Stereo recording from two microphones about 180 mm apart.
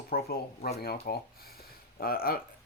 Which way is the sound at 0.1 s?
55° left (ahead or behind).